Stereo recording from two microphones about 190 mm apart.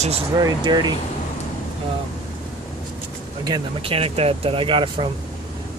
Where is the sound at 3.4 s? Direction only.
25° right (ahead or behind).